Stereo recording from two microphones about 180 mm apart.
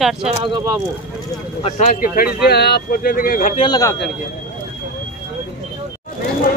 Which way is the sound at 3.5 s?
30° left (ahead or behind).